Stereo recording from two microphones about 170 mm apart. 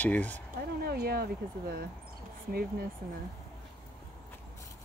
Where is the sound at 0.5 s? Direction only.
65° right (ahead or behind).